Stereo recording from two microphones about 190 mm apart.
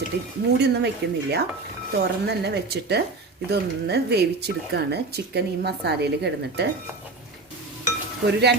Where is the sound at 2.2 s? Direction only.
60° right (ahead or behind).